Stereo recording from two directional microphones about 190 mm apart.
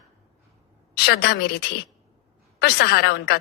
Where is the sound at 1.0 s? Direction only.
55° left (ahead or behind).